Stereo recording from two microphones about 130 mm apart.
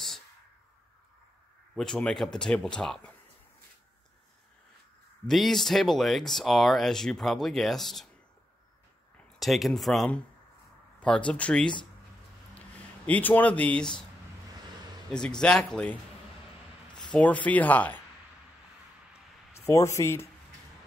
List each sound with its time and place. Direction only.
1.8 s speech: 5° left (ahead or behind)
5.2 s speech: centre (ahead or behind)
9.1 s speech: centre (ahead or behind)
15.0 s speech: 5° left (ahead or behind)
17.1 s speech: 10° left (ahead or behind)
19.7 s speech: 25° left (ahead or behind)